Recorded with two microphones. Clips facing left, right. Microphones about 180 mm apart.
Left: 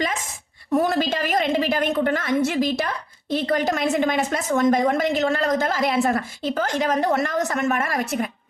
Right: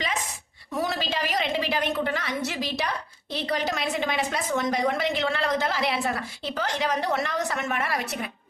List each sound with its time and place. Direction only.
0.0 s a woman's voice: 45° left (ahead or behind)